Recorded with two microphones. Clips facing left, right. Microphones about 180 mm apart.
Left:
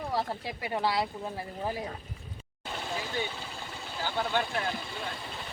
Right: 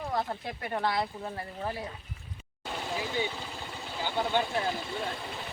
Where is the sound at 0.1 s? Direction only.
5° left (ahead or behind).